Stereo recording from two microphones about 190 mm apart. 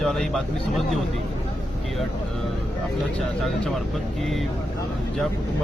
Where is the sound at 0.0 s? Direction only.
Centre (ahead or behind).